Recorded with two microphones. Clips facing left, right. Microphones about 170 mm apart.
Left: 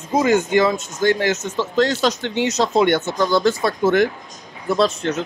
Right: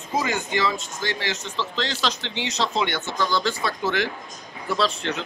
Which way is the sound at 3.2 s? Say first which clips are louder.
Left 6 dB; 15° left (ahead or behind).